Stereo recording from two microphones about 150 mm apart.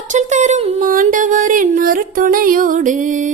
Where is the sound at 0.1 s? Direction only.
50° right (ahead or behind).